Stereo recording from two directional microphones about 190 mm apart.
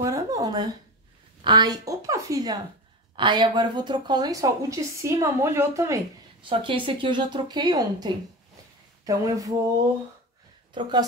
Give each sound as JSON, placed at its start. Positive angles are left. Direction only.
{"t": 0.0, "sound": "a sound", "side_deg": -20}
{"t": 1.4, "sound": "speech", "side_deg": -25}
{"t": 6.5, "sound": "speech", "side_deg": -25}
{"t": 10.7, "sound": "a woman's voice", "side_deg": -25}